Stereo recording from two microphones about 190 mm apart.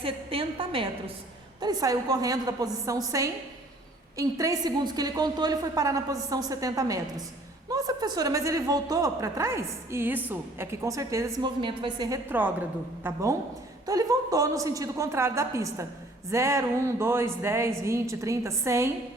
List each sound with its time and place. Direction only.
0.0 s a woman's voice: 30° right (ahead or behind)